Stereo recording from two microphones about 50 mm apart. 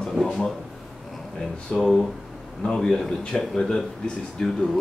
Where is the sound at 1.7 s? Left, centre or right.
Centre.